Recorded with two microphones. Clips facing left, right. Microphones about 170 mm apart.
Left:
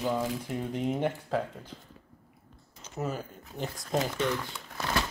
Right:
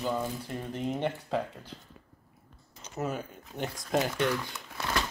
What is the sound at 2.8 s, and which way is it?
Speech, 5° left (ahead or behind).